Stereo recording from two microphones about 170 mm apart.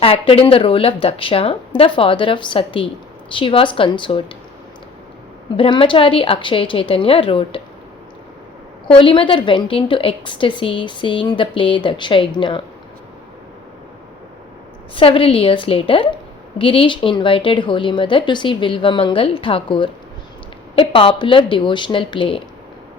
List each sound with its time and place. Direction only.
0.0 s a woman's voice: 35° left (ahead or behind)
5.5 s a woman's voice: 30° left (ahead or behind)
8.9 s a woman's voice: 30° left (ahead or behind)
14.9 s a woman's voice: 35° left (ahead or behind)